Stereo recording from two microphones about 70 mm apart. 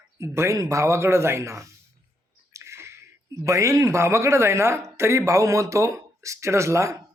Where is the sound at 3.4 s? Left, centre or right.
Right.